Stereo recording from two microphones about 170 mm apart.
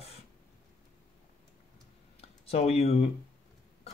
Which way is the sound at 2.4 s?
35° left (ahead or behind).